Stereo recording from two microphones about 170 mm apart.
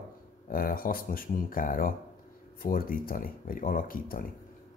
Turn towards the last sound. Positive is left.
turn(degrees=55)  # may be behind; listen again after turning